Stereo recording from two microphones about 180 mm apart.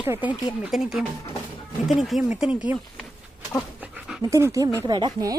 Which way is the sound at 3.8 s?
5° right (ahead or behind).